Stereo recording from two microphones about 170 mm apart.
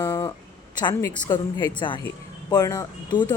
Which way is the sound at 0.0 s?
15° left (ahead or behind).